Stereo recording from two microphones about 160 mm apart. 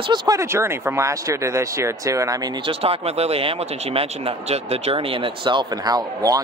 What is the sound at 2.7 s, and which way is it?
Speech, 35° right (ahead or behind).